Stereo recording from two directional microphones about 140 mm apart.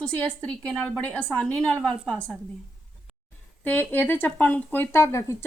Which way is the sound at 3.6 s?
15° left (ahead or behind).